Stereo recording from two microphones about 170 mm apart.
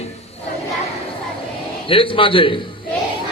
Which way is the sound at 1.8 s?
30° left (ahead or behind).